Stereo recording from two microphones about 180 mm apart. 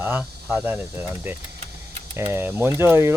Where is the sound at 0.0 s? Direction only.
10° right (ahead or behind).